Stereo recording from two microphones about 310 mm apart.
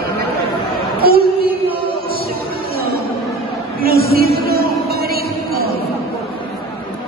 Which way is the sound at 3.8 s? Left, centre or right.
Right.